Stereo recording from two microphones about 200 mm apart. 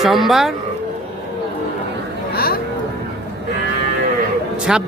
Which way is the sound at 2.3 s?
50° left (ahead or behind).